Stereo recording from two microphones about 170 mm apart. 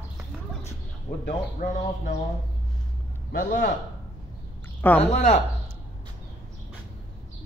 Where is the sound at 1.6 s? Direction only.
50° left (ahead or behind).